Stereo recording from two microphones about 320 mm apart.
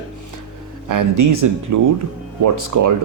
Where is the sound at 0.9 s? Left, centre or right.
Right.